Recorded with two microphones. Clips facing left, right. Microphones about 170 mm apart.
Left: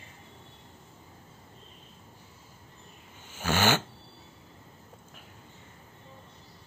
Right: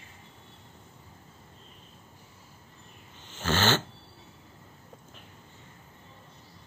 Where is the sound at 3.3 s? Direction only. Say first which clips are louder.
Even; 10° left (ahead or behind).